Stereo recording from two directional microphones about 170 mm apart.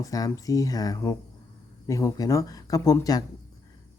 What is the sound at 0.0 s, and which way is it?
Speech, 20° left (ahead or behind).